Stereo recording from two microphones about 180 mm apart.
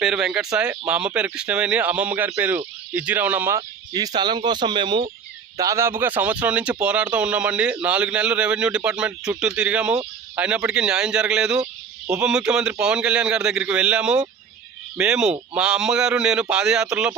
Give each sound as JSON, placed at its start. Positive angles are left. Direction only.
{"t": 0.0, "sound": "a man's voice", "side_deg": 0}